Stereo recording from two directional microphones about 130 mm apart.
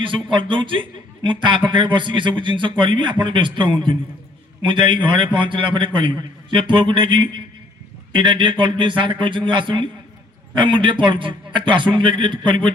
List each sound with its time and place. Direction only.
0.0 s a man's voice: 40° right (ahead or behind)